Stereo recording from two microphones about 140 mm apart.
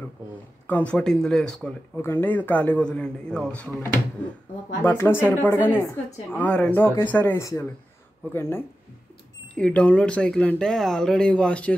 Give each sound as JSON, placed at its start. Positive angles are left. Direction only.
{"t": 0.7, "sound": "speech", "side_deg": 10}
{"t": 2.0, "sound": "a woman's voice", "side_deg": 15}
{"t": 4.8, "sound": "a woman's voice", "side_deg": 15}